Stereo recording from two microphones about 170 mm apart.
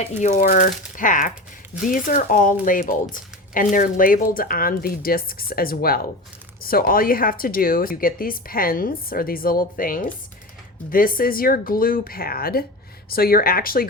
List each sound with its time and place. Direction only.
0.2 s speech: 45° left (ahead or behind); by 13.8 s 60° left (ahead or behind)